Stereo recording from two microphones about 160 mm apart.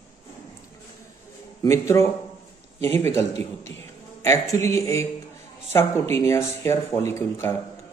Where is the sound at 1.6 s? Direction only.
20° left (ahead or behind).